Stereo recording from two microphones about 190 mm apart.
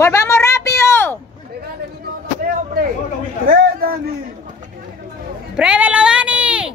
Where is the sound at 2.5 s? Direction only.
50° right (ahead or behind).